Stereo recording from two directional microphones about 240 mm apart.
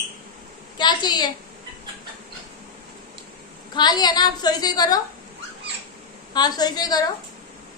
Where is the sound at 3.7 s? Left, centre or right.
Centre.